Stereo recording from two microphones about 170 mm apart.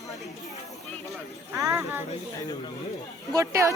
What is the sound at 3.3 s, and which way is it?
Speech, 20° right (ahead or behind).